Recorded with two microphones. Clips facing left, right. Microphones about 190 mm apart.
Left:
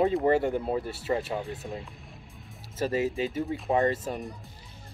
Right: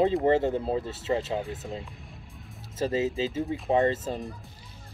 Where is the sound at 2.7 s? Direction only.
25° right (ahead or behind).